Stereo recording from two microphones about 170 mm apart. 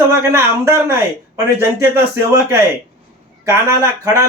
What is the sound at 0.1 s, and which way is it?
Speech, 15° right (ahead or behind).